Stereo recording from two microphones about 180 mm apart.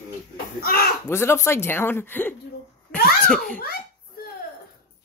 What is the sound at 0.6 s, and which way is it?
Speech, 55° left (ahead or behind).